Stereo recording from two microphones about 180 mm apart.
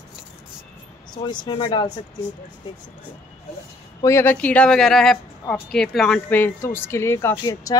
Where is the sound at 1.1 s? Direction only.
25° left (ahead or behind).